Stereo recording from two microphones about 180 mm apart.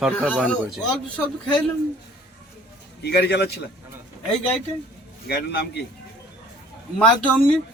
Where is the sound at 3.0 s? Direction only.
65° left (ahead or behind).